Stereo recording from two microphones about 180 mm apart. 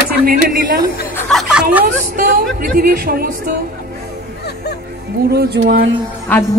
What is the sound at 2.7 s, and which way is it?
Speech, 55° right (ahead or behind).